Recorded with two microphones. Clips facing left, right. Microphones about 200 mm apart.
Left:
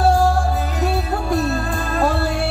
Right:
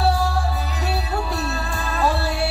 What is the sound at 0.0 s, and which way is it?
Music, 50° left (ahead or behind).